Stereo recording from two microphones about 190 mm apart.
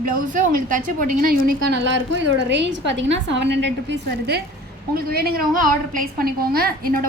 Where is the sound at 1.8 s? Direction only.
70° right (ahead or behind).